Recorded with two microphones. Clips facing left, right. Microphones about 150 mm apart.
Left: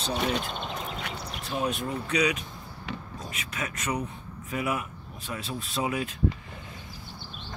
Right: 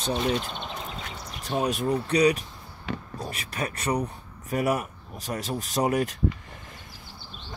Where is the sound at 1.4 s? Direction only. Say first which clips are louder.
Right 4 dB; 40° right (ahead or behind).